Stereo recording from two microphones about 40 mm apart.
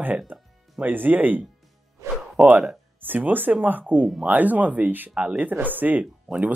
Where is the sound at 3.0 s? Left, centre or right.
Right.